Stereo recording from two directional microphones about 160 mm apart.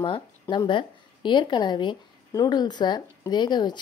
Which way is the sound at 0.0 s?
30° left (ahead or behind).